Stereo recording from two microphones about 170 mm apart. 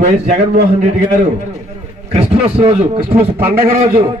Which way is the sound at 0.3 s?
45° right (ahead or behind).